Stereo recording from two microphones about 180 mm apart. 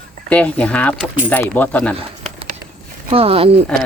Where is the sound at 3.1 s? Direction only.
30° right (ahead or behind).